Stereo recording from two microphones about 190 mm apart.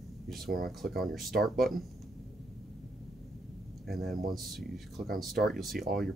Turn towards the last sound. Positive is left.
turn(degrees=0)  # may be behind; listen again after turning